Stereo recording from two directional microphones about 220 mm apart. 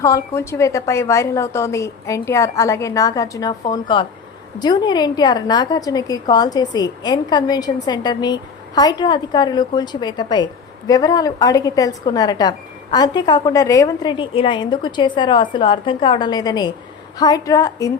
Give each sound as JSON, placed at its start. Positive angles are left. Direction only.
{"t": 0.0, "sound": "a woman's voice", "side_deg": 15}